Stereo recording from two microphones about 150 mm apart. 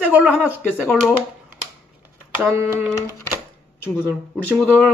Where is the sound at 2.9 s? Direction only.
20° left (ahead or behind).